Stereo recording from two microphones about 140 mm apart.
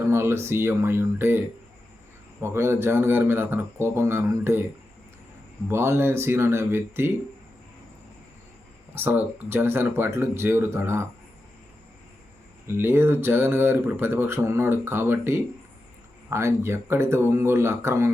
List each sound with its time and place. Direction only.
0.1 s speech: 20° right (ahead or behind)
5.6 s speech: 15° right (ahead or behind)
9.0 s speech: 15° right (ahead or behind)
12.6 s speech: 15° right (ahead or behind)